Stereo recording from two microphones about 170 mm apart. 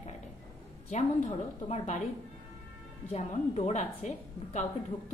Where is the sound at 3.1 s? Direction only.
40° left (ahead or behind).